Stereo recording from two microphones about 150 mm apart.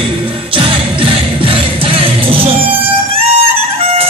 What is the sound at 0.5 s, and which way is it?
Music, 35° right (ahead or behind).